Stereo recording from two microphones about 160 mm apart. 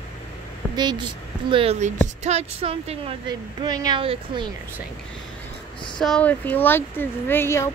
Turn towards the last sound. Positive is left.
turn(degrees=15)  # may be behind; listen again after turning